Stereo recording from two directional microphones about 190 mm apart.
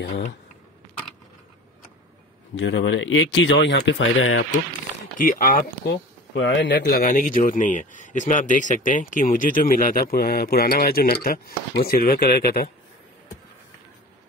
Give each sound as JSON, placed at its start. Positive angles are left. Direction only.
{"t": 2.5, "sound": "speech", "side_deg": 75}
{"t": 5.1, "sound": "a man's voice", "side_deg": 45}
{"t": 6.3, "sound": "a man's voice", "side_deg": 65}